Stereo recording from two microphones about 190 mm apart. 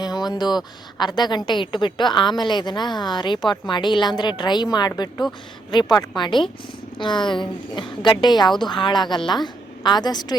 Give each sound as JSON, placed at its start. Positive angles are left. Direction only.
{"t": 0.0, "sound": "a woman's voice", "side_deg": 20}